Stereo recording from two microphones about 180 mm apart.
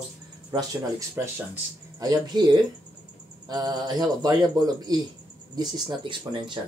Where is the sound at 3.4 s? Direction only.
20° right (ahead or behind).